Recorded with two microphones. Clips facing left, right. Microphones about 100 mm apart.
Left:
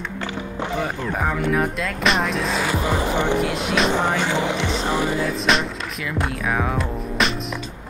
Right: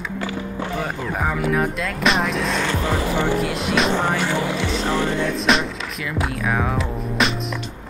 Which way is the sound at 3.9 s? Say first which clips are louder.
Even; 15° left (ahead or behind).